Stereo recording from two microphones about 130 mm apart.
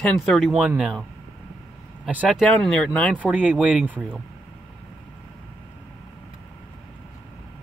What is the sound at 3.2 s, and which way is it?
Speech, 10° right (ahead or behind).